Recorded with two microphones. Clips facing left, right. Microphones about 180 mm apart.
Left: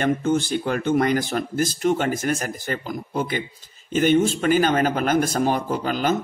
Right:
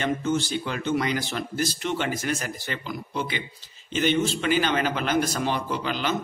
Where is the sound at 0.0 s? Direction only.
50° left (ahead or behind).